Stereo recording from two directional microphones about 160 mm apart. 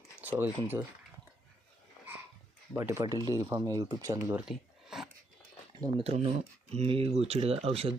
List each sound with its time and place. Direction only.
0.2 s speech: 10° right (ahead or behind)
2.7 s speech: 15° right (ahead or behind)
5.7 s speech: 35° right (ahead or behind)